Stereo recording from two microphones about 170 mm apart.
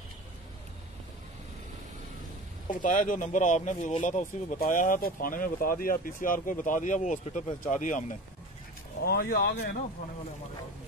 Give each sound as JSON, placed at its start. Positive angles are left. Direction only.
{"t": 2.7, "sound": "speech", "side_deg": 50}
{"t": 9.0, "sound": "speech", "side_deg": 65}